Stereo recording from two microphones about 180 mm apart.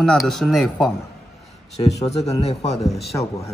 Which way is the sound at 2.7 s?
Centre (ahead or behind).